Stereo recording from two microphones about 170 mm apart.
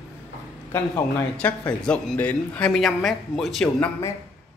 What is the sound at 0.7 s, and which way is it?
A man's voice, 10° left (ahead or behind).